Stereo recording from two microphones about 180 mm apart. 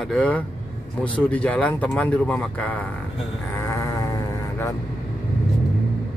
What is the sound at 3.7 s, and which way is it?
Sheep, 20° left (ahead or behind).